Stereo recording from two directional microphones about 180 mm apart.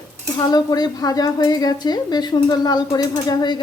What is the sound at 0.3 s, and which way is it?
A woman's voice, 20° left (ahead or behind).